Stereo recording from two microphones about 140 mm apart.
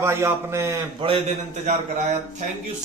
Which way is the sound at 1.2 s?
60° right (ahead or behind).